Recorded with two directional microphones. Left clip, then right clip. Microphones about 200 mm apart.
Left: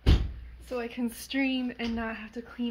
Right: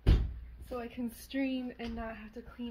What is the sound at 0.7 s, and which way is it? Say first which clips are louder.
Speech: left 7 dB; 15° left (ahead or behind).